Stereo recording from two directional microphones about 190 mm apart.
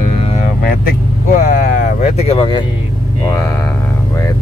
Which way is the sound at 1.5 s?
45° left (ahead or behind).